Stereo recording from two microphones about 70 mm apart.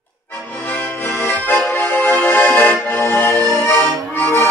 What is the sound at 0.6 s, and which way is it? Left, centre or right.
Accordion, left.